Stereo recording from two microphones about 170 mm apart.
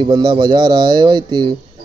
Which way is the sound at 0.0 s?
25° right (ahead or behind).